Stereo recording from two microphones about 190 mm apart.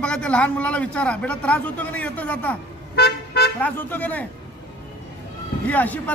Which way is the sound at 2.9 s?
60° left (ahead or behind).